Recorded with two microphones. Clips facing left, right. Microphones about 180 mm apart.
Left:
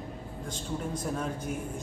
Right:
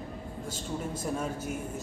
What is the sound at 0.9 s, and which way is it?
Speech, 5° right (ahead or behind).